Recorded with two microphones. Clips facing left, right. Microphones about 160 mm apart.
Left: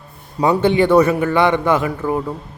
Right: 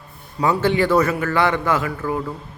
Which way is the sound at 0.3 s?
20° left (ahead or behind).